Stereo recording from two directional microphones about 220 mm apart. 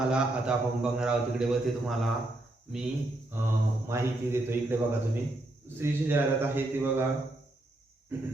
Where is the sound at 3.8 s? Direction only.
10° right (ahead or behind).